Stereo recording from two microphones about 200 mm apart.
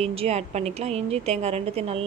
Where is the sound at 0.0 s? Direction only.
30° right (ahead or behind).